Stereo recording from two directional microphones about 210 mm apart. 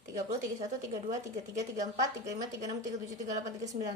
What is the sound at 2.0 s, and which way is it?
A woman's voice, 15° right (ahead or behind).